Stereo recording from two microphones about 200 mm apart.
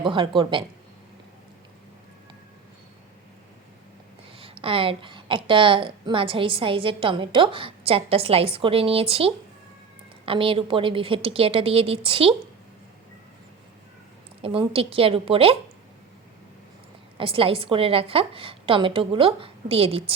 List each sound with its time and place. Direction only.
0.0 s a woman's voice: 25° right (ahead or behind)
4.4 s a woman's voice: 30° right (ahead or behind)
14.4 s a woman's voice: 30° right (ahead or behind)
17.2 s a woman's voice: 25° right (ahead or behind)